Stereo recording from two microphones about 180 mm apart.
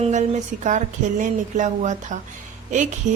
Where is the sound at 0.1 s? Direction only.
40° right (ahead or behind).